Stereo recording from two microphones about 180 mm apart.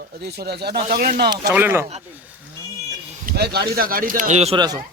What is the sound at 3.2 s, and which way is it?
Speech, 60° right (ahead or behind).